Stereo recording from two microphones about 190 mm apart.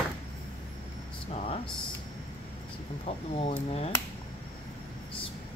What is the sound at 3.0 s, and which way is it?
Speech, 35° left (ahead or behind).